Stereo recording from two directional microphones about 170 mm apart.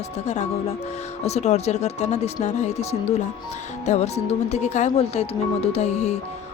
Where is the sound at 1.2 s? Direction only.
40° left (ahead or behind).